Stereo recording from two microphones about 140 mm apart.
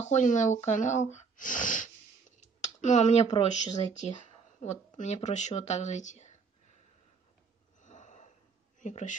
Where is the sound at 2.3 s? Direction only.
60° left (ahead or behind).